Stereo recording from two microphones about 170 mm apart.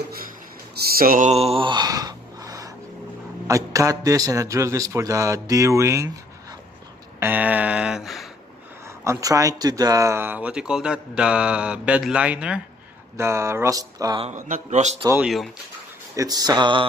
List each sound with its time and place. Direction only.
0.7 s speech: 60° right (ahead or behind)
1.3 s a sound: 35° right (ahead or behind)
3.4 s a man's voice: 20° right (ahead or behind)
7.2 s a sound: 10° right (ahead or behind)
9.0 s speech: 20° right (ahead or behind)
14.2 s a man's voice: 45° right (ahead or behind)
15.2 s speech: centre (ahead or behind)
16.2 s a man's voice: 20° right (ahead or behind)